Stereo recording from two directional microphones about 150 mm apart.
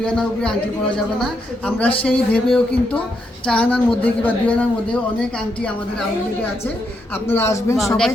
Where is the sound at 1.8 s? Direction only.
10° left (ahead or behind).